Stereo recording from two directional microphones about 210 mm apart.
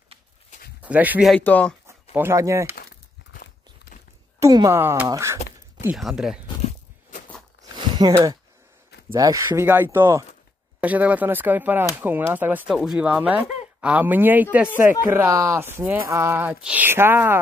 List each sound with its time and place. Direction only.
0.8 s speech: 5° right (ahead or behind)
1.3 s speech: 5° left (ahead or behind)
2.1 s speech: 15° right (ahead or behind)
4.4 s speech: 15° right (ahead or behind)
5.9 s speech: centre (ahead or behind)
6.4 s walk: 35° left (ahead or behind)
7.7 s a sound: 20° right (ahead or behind)
9.1 s speech: 15° right (ahead or behind)